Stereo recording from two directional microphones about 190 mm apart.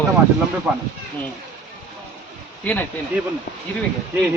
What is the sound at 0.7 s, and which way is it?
Speech, 5° right (ahead or behind).